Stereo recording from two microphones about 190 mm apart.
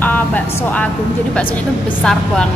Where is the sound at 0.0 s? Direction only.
10° left (ahead or behind).